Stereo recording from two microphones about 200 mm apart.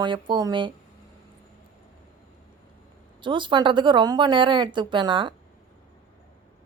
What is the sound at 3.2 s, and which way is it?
A woman's voice, 25° right (ahead or behind).